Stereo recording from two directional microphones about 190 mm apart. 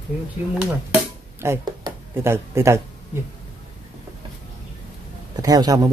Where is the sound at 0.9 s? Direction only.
15° right (ahead or behind).